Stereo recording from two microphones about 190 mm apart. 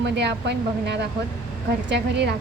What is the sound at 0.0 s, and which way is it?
Speech, 60° right (ahead or behind).